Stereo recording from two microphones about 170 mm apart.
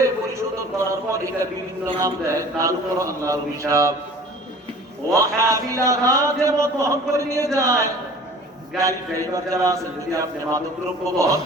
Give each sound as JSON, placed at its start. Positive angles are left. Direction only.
{"t": 0.0, "sound": "a sound", "side_deg": -15}
{"t": 2.0, "sound": "a man's voice", "side_deg": -15}
{"t": 5.1, "sound": "a man's voice", "side_deg": -20}